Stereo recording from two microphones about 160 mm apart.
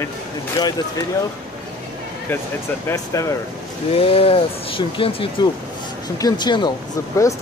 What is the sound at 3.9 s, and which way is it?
Speech, 35° left (ahead or behind).